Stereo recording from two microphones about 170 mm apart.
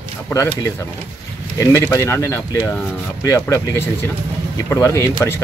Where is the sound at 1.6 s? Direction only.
15° left (ahead or behind).